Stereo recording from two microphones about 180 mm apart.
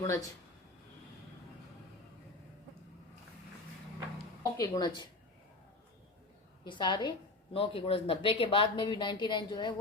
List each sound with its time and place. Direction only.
0.0 s speech: 20° left (ahead or behind)
4.5 s speech: 20° left (ahead or behind)
6.7 s speech: 25° left (ahead or behind)